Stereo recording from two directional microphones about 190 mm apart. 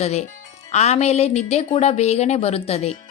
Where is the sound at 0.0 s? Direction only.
35° left (ahead or behind).